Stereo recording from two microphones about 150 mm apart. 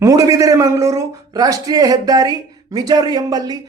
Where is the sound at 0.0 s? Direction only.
20° right (ahead or behind).